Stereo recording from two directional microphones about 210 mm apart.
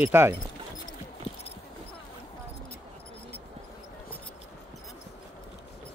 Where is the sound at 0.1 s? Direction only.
10° right (ahead or behind).